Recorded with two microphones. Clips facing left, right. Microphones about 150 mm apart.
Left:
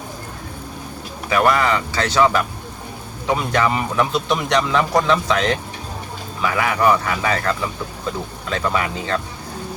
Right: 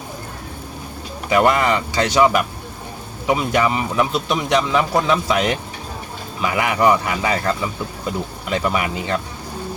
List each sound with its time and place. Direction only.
1.3 s speech: 20° right (ahead or behind)